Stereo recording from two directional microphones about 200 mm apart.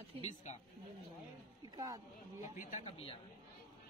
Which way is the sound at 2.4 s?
40° left (ahead or behind).